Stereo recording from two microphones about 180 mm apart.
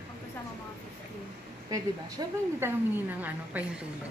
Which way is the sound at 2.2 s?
25° right (ahead or behind).